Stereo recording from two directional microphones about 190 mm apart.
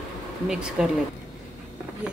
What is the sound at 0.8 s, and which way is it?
Speech, centre (ahead or behind).